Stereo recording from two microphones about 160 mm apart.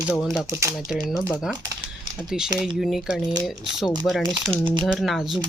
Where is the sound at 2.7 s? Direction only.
Centre (ahead or behind).